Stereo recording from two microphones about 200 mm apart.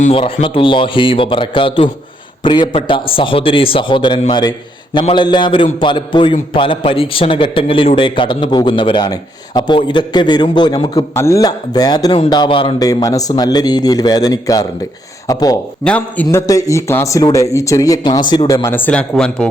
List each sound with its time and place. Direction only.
0.0 s a man's voice: 25° left (ahead or behind)
15.8 s a man's voice: 5° left (ahead or behind)